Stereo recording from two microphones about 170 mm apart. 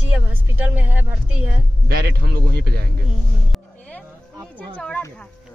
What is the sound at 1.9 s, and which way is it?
Speech, 65° right (ahead or behind).